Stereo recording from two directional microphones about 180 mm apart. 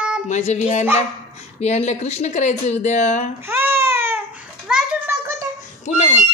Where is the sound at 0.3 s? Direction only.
40° left (ahead or behind).